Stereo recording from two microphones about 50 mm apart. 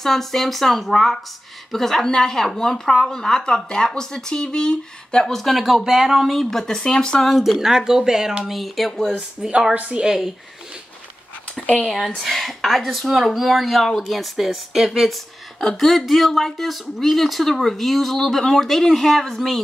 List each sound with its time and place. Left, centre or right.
0.0 s speech: centre
5.6 s speech: centre
7.3 s speech: centre
9.1 s speech: right
10.0 s speech: centre
12.2 s speech: centre